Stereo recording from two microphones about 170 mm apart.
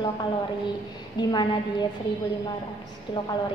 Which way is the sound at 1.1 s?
25° left (ahead or behind).